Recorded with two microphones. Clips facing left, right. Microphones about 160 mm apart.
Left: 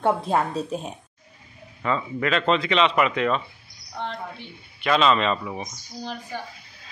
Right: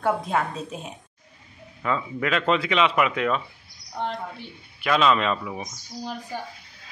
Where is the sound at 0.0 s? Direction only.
30° left (ahead or behind).